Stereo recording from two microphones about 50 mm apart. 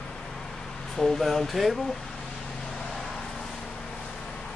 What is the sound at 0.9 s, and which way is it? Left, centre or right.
Speech, centre.